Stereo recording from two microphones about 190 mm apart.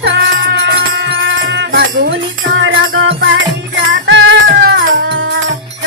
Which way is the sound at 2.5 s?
85° right.